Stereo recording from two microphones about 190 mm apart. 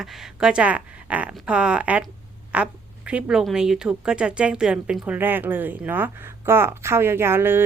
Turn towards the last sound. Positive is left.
turn(degrees=-10)  # may be behind; listen again after turning